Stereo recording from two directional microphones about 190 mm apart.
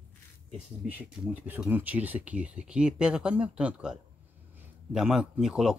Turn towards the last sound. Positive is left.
turn(degrees=-5)  # may be behind; listen again after turning